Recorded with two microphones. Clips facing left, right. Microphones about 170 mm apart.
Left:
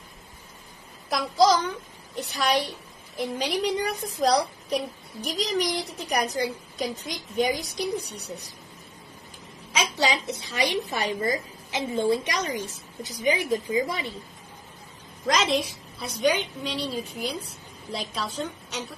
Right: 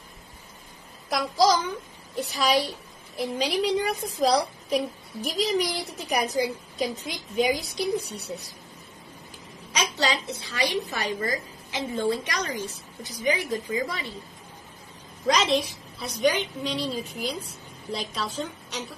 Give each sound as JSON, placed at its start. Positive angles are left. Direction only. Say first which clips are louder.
{"t": 1.1, "sound": "a woman's voice", "louder": "left 1 dB", "side_deg": 0}
{"t": 9.9, "sound": "a woman's voice", "louder": "left 2 dB", "side_deg": 15}
{"t": 15.5, "sound": "a woman's voice", "louder": "right 1 dB", "side_deg": 0}